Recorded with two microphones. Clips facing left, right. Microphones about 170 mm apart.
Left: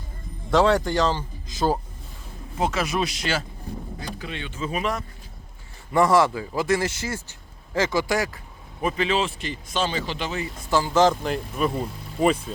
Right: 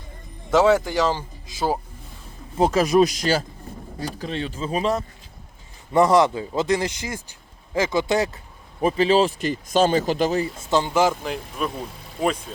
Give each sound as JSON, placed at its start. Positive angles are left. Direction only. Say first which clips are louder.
{"t": 0.5, "sound": "speech", "louder": "right 2 dB", "side_deg": -5}
{"t": 2.6, "sound": "a man's voice", "louder": "right 8 dB", "side_deg": -35}
{"t": 8.8, "sound": "speech", "louder": "right 6 dB", "side_deg": -35}
{"t": 10.7, "sound": "a man's voice", "louder": "even", "side_deg": -20}
{"t": 11.0, "sound": "speech", "louder": "left 2 dB", "side_deg": 0}